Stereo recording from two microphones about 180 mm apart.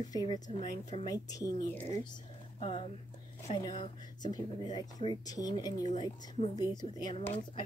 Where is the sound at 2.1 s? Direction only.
30° left (ahead or behind).